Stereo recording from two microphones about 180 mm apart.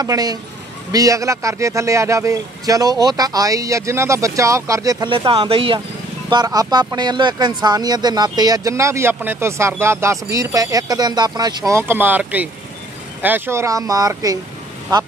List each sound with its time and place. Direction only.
0.0 s a man's voice: 20° right (ahead or behind)